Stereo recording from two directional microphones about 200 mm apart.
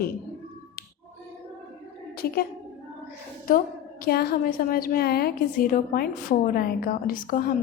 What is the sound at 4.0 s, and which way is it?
Speech, 50° left (ahead or behind).